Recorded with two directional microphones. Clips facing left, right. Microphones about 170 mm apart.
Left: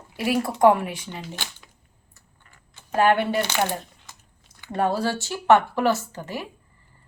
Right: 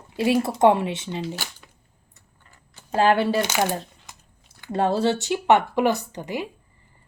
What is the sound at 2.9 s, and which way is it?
Speech, 30° right (ahead or behind).